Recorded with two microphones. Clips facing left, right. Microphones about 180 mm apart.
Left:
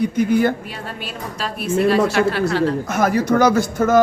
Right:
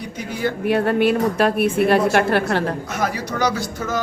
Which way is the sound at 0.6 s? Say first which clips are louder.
Right 14 dB; 60° right (ahead or behind).